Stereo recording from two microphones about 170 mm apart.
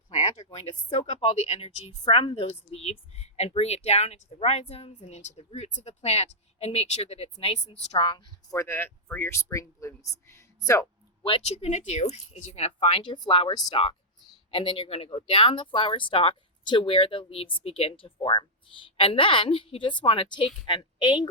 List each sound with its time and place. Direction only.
0.2 s a sound: 35° left (ahead or behind)
1.2 s speech: 35° left (ahead or behind)
8.5 s speech: 15° left (ahead or behind)
11.2 s speech: 35° left (ahead or behind)
13.0 s speech: 25° left (ahead or behind)